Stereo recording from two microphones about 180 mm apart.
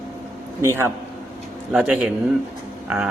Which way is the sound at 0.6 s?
15° right (ahead or behind).